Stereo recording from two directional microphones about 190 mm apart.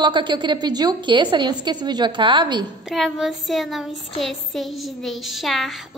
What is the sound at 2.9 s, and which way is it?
A woman's voice, centre (ahead or behind).